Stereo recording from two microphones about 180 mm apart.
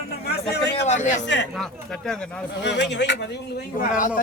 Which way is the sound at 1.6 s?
Centre (ahead or behind).